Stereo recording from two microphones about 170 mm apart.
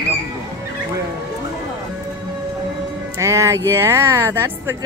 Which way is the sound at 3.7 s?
15° right (ahead or behind).